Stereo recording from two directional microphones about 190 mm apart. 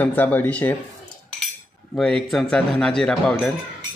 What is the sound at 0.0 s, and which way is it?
Speech, 10° left (ahead or behind).